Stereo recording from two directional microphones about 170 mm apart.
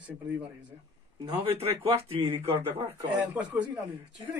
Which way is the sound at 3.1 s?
5° right (ahead or behind).